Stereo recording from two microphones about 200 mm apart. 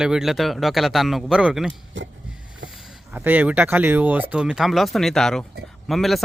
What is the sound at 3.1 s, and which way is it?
Speech, 10° right (ahead or behind).